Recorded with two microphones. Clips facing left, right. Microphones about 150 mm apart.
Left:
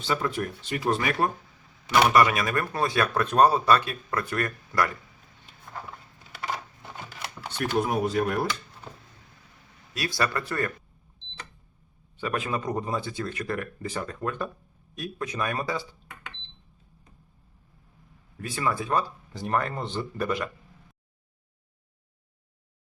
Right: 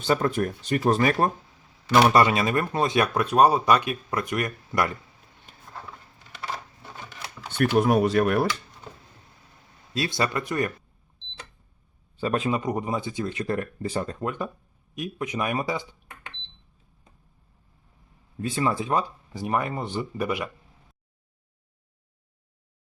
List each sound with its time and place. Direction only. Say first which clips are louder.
0.0 s speech: right 5 dB; 45° right (ahead or behind)
2.1 s speech: right 2 dB; 25° right (ahead or behind)
7.6 s speech: right 5 dB; 75° right (ahead or behind)
9.9 s speech: right 2 dB; 25° right (ahead or behind)
12.2 s a man's voice: right 4 dB; 30° right (ahead or behind)
12.5 s speech: right 3 dB; 15° right (ahead or behind)
14.3 s speech: right 1 dB; 15° right (ahead or behind)
18.3 s speech: right 3 dB; 25° right (ahead or behind)